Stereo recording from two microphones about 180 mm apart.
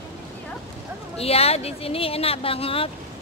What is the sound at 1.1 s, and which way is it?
Speech, 35° left (ahead or behind).